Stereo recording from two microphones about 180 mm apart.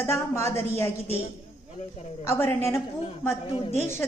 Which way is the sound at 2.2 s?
10° left (ahead or behind).